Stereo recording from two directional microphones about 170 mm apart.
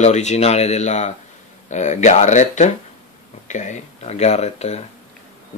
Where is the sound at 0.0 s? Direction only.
40° left (ahead or behind).